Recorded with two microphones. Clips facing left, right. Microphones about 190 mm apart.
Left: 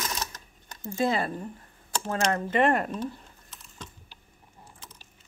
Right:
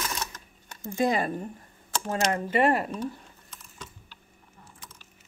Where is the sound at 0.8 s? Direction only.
15° right (ahead or behind).